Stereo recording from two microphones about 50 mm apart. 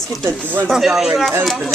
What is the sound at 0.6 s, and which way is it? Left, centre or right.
Speech, centre.